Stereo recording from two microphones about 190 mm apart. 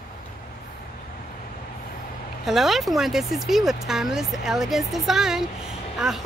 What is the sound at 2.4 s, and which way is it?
Speech, centre (ahead or behind).